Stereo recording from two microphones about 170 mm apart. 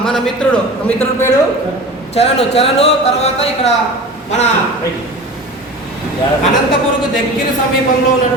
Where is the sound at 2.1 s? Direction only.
35° left (ahead or behind).